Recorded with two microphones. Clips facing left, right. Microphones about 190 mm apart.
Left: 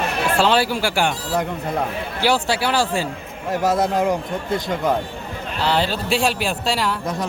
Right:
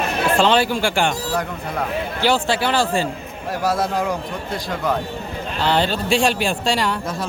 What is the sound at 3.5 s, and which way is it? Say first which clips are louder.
A man's voice: left 2 dB; 20° left (ahead or behind).